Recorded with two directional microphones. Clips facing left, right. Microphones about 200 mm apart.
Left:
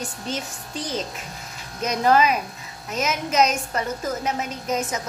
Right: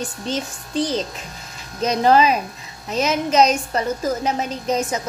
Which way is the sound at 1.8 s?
30° right (ahead or behind).